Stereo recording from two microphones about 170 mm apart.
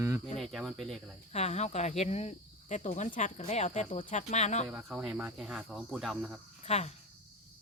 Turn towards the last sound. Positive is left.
turn(degrees=40)  # may be behind; listen again after turning